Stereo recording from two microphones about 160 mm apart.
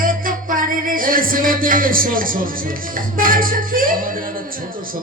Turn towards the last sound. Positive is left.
turn(degrees=-60)  # may be behind; listen again after turning